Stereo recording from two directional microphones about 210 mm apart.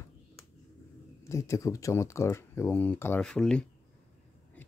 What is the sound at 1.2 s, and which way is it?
Speech, 15° left (ahead or behind).